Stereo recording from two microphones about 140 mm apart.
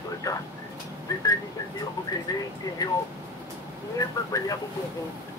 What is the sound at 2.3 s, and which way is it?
Speech, 30° left (ahead or behind).